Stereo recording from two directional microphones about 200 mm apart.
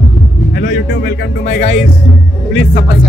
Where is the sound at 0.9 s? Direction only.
60° left (ahead or behind).